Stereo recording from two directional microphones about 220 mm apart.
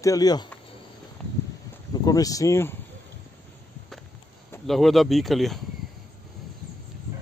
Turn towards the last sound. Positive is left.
turn(degrees=0)  # may be behind; listen again after turning